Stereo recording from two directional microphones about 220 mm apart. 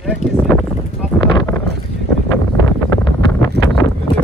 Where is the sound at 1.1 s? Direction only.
15° left (ahead or behind).